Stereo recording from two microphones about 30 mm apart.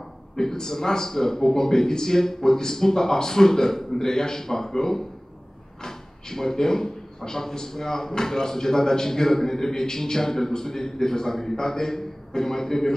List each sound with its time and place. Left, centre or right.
0.4 s speech: centre